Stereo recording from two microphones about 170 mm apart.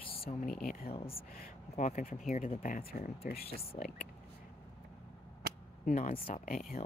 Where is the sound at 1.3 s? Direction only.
55° left (ahead or behind).